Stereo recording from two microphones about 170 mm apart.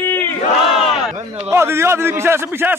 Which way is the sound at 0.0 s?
10° left (ahead or behind).